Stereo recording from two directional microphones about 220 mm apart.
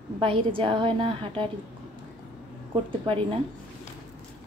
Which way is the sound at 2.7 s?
25° right (ahead or behind).